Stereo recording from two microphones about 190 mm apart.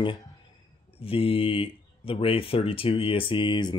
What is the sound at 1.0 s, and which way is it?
Speech, 30° left (ahead or behind).